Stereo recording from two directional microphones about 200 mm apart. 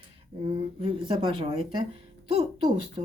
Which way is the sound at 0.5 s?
30° right (ahead or behind).